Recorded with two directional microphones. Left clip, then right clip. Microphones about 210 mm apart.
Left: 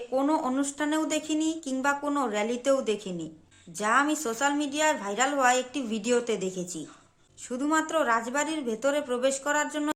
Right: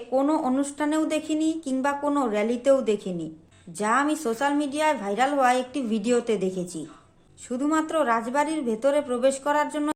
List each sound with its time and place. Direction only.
0.1 s speech: 10° left (ahead or behind)